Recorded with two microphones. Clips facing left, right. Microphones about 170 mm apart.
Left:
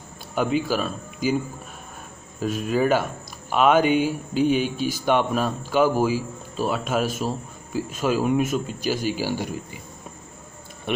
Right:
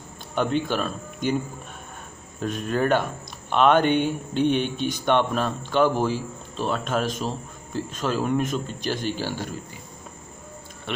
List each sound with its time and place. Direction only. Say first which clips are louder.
0.3 s speech: left 1 dB; 5° left (ahead or behind)
2.4 s speech: left 2 dB; 5° left (ahead or behind)